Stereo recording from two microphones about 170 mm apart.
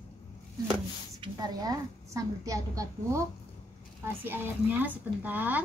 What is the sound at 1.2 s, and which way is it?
A woman's voice, 20° right (ahead or behind).